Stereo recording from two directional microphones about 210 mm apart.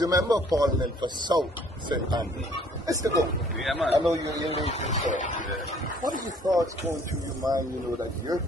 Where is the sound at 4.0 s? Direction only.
15° right (ahead or behind).